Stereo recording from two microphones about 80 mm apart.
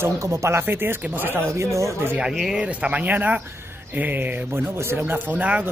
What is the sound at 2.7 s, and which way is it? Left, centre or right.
Speech, centre.